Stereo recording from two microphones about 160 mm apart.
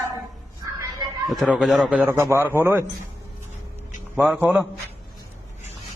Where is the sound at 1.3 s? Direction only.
Centre (ahead or behind).